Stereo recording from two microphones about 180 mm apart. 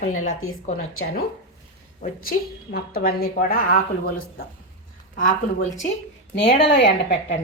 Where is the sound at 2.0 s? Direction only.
50° left (ahead or behind).